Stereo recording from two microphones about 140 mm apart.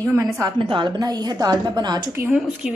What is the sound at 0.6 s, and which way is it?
A woman's voice, 35° right (ahead or behind).